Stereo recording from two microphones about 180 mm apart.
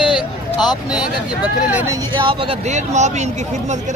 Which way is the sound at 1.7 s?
15° right (ahead or behind).